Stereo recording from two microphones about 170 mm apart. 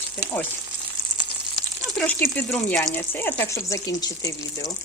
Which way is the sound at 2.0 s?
10° left (ahead or behind).